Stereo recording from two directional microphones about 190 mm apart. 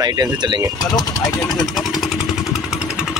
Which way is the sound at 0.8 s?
20° left (ahead or behind).